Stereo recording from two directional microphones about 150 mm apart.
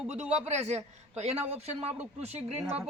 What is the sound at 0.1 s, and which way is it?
Speech, 45° right (ahead or behind).